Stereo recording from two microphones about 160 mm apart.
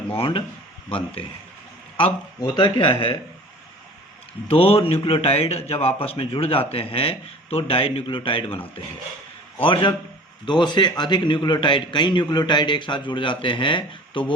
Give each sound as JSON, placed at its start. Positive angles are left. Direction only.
{"t": 0.1, "sound": "a man's voice", "side_deg": 35}
{"t": 4.4, "sound": "a man's voice", "side_deg": 35}